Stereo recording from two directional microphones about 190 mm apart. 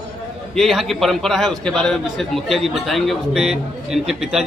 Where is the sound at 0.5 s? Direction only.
Centre (ahead or behind).